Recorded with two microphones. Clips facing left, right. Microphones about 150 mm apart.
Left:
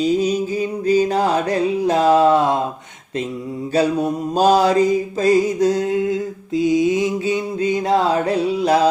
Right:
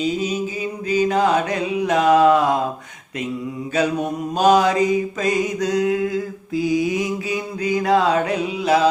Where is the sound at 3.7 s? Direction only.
35° left (ahead or behind).